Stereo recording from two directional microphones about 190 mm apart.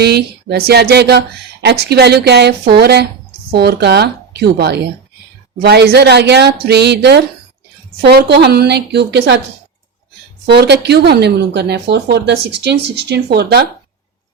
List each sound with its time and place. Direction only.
0.0 s speech: 60° right (ahead or behind)
10.4 s speech: 60° right (ahead or behind)